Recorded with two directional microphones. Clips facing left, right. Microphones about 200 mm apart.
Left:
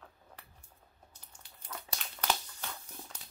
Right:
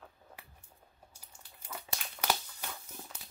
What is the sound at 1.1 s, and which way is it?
Crumpling, 10° right (ahead or behind).